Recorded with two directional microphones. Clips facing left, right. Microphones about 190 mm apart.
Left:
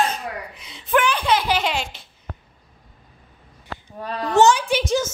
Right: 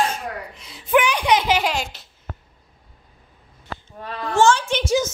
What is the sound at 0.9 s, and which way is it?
Speech, 15° right (ahead or behind).